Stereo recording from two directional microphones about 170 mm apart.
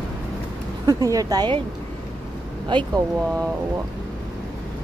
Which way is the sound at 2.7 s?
30° right (ahead or behind).